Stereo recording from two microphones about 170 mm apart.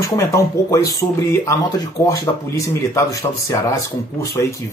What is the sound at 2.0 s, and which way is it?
Speech, 15° left (ahead or behind).